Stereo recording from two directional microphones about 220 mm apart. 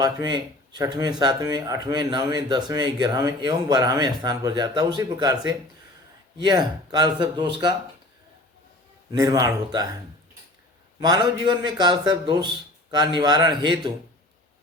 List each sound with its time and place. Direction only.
0.0 s speech: 20° right (ahead or behind)
6.4 s speech: 20° right (ahead or behind)
9.1 s speech: 15° right (ahead or behind)
11.0 s speech: 20° right (ahead or behind)